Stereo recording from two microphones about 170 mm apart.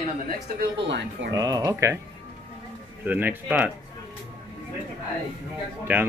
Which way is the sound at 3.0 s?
10° right (ahead or behind).